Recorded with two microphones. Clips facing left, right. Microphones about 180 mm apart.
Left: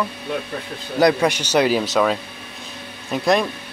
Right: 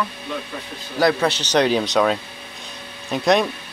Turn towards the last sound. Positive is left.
turn(degrees=0)  # may be behind; listen again after turning